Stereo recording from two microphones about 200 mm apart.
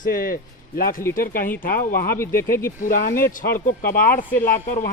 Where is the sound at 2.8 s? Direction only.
45° left (ahead or behind).